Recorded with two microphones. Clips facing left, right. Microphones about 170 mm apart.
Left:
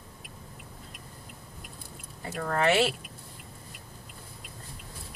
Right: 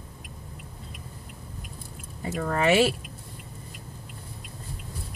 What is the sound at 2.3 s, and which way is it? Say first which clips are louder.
Speech: right 3 dB; 10° right (ahead or behind).